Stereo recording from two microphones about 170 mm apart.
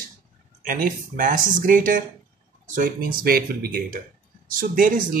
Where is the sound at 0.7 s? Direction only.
55° right (ahead or behind).